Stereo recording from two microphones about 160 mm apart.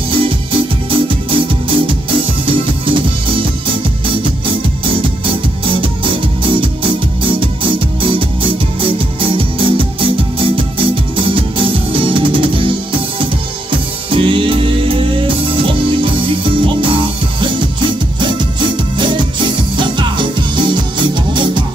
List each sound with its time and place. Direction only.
0.1 s music: 35° right (ahead or behind)
5.2 s music: 30° right (ahead or behind)